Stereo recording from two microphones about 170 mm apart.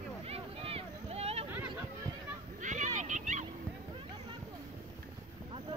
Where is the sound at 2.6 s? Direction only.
45° right (ahead or behind).